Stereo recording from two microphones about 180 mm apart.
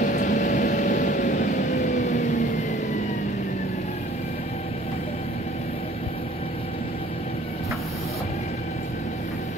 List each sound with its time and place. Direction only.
0.0 s vehicle: 45° left (ahead or behind)